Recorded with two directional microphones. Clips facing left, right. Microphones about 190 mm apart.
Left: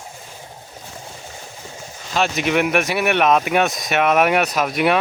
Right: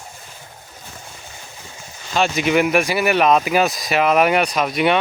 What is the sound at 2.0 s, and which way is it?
Speech, centre (ahead or behind).